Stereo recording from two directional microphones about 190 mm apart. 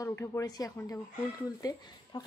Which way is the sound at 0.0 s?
15° left (ahead or behind).